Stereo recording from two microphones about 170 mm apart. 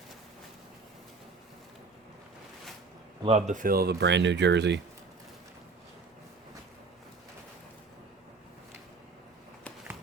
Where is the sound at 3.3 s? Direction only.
40° right (ahead or behind); by 4.8 s 90° right.